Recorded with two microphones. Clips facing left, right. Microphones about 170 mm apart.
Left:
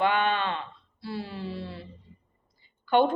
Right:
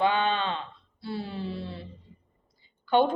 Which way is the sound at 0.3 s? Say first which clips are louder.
Even; 25° right (ahead or behind).